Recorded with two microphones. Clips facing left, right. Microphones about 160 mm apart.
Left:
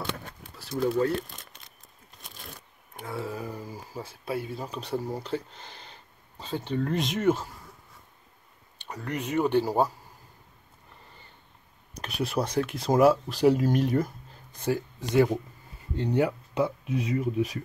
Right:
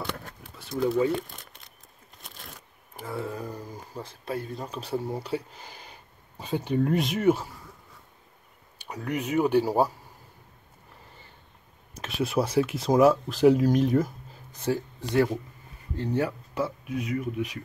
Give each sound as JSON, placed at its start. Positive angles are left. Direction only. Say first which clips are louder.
{"t": 0.6, "sound": "speech", "louder": "right 1 dB", "side_deg": 0}
{"t": 3.0, "sound": "speech", "louder": "right 1 dB", "side_deg": 0}
{"t": 8.7, "sound": "speech", "louder": "right 3 dB", "side_deg": -10}
{"t": 12.0, "sound": "speech", "louder": "right 2 dB", "side_deg": 0}
{"t": 15.0, "sound": "speech", "louder": "left 3 dB", "side_deg": 15}
{"t": 16.8, "sound": "speech", "louder": "left 2 dB", "side_deg": 30}